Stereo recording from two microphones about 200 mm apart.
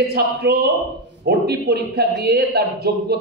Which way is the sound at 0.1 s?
55° right (ahead or behind).